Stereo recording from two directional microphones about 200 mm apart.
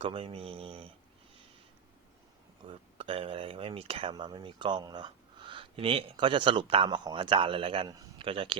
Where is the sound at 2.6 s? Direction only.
25° right (ahead or behind).